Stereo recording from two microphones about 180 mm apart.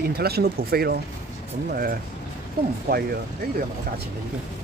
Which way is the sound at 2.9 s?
55° right (ahead or behind).